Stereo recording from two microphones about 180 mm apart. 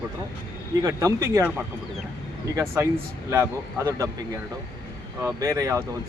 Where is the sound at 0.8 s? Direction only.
20° right (ahead or behind).